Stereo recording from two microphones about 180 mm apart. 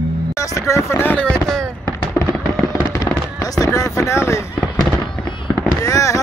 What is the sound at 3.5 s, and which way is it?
Vehicle, 20° left (ahead or behind).